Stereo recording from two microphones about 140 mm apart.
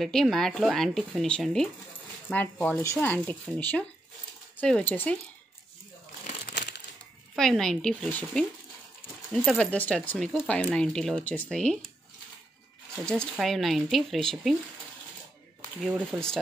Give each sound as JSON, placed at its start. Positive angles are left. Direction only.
{"t": 0.0, "sound": "speech", "side_deg": 0}
{"t": 6.2, "sound": "crumpling", "side_deg": 55}
{"t": 7.3, "sound": "speech", "side_deg": 5}
{"t": 9.5, "sound": "speech", "side_deg": 10}
{"t": 13.0, "sound": "speech", "side_deg": 5}
{"t": 15.8, "sound": "speech", "side_deg": 0}